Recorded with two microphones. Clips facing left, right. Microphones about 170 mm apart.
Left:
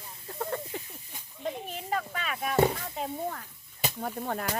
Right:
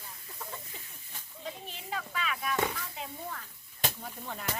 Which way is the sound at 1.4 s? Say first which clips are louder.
Left 7 dB; 50° left (ahead or behind).